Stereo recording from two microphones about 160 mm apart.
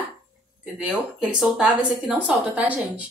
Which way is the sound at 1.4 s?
5° right (ahead or behind).